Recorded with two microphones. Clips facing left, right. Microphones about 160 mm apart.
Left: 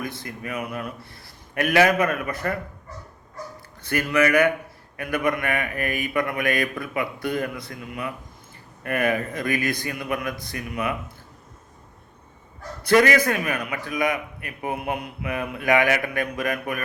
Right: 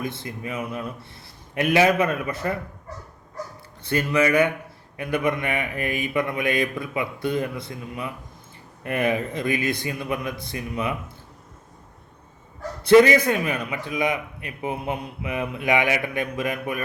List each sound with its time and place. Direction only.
0.0 s a man's voice: 25° right (ahead or behind)
3.8 s a man's voice: 25° right (ahead or behind)
12.8 s a man's voice: 25° right (ahead or behind)